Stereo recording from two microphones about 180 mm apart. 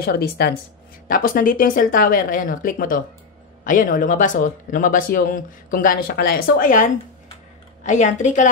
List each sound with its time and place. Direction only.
0.0 s a woman's voice: 60° left (ahead or behind); by 8.5 s 40° left (ahead or behind)